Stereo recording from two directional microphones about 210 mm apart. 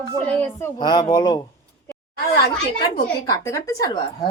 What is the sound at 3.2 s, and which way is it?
A woman's voice, 15° left (ahead or behind).